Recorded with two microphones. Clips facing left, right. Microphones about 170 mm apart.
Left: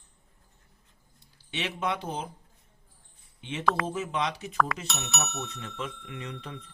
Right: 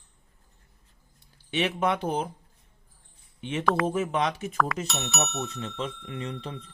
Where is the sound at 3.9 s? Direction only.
50° right (ahead or behind).